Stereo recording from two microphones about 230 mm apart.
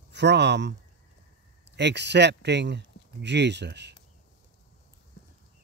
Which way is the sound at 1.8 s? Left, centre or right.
Right.